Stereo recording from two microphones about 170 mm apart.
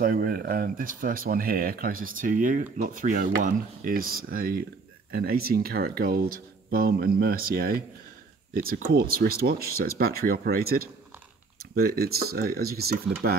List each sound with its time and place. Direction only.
0.0 s speech: 60° right (ahead or behind)